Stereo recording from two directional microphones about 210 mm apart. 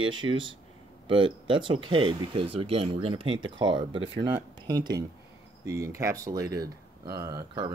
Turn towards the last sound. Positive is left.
turn(degrees=-20)  # may be behind; listen again after turning